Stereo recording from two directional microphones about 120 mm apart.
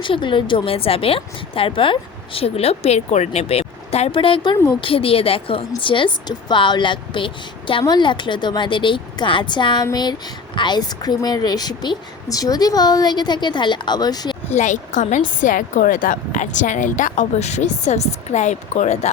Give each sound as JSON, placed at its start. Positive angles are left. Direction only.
{"t": 0.0, "sound": "speech", "side_deg": 45}
{"t": 14.5, "sound": "a woman's voice", "side_deg": 85}